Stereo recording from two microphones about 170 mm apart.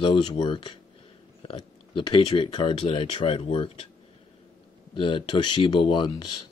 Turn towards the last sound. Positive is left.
turn(degrees=25)  # may be behind; listen again after turning